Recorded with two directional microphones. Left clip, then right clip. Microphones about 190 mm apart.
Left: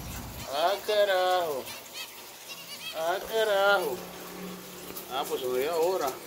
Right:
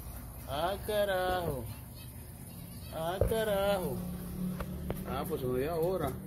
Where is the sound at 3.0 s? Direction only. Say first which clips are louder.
Left 4 dB; 10° right (ahead or behind).